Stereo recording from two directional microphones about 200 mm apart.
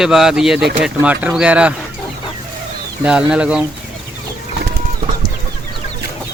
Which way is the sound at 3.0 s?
5° right (ahead or behind).